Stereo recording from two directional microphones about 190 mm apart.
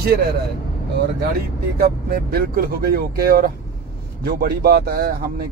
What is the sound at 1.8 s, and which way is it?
Speech, 55° right (ahead or behind).